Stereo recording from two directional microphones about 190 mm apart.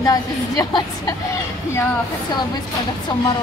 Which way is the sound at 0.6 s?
20° left (ahead or behind).